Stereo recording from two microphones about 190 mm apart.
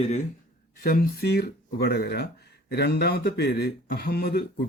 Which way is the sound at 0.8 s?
50° left (ahead or behind).